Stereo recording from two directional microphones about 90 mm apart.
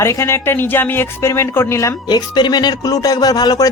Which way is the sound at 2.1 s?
55° left (ahead or behind).